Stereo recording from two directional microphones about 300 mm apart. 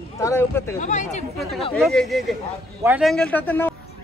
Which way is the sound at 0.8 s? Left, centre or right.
Left.